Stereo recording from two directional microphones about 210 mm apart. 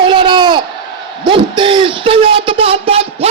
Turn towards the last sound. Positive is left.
turn(degrees=-30)  # may be behind; listen again after turning